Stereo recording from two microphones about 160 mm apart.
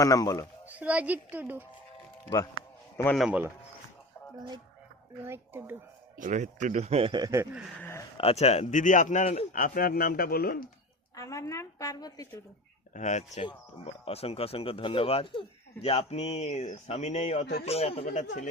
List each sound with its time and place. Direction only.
0.0 s speech: 20° left (ahead or behind)
0.7 s speech: 10° right (ahead or behind)
3.2 s speech: 10° right (ahead or behind)
5.2 s speech: 15° right (ahead or behind)
6.1 s a man's voice: 50° right (ahead or behind); by 7.4 s 20° right (ahead or behind)
7.8 s speech: 15° left (ahead or behind)
8.2 s speech: 40° left (ahead or behind)
9.6 s speech: 65° left (ahead or behind)
11.1 s a woman's voice: 20° left (ahead or behind)
12.9 s speech: 50° left (ahead or behind)